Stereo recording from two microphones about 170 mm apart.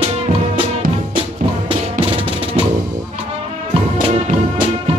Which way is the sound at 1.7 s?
30° right (ahead or behind).